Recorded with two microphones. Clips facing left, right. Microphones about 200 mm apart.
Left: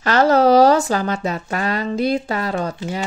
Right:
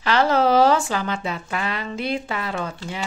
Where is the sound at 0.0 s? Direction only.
45° left (ahead or behind).